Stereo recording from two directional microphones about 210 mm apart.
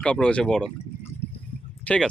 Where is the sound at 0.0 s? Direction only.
5° left (ahead or behind).